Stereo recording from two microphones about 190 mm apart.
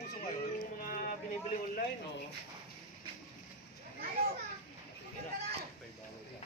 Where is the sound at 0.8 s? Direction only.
50° left (ahead or behind).